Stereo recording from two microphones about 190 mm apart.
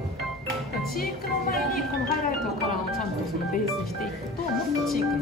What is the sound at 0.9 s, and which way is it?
Speech, 50° left (ahead or behind).